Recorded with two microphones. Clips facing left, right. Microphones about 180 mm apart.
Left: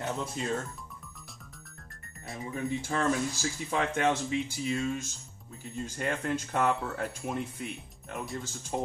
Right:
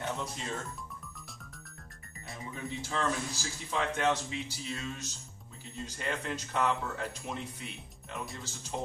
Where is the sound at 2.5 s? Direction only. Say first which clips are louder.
Left 5 dB; 50° left (ahead or behind).